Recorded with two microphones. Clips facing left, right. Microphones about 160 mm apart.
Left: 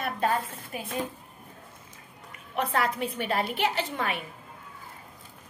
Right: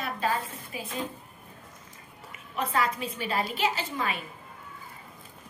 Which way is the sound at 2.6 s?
65° left (ahead or behind).